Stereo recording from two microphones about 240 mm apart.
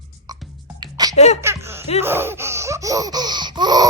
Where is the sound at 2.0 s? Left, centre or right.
Centre.